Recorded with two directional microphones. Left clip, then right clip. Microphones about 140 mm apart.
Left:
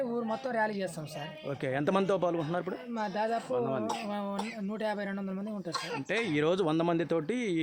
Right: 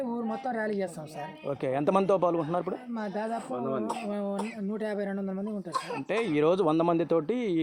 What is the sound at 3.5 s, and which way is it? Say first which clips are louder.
Speech: even; 15° left (ahead or behind).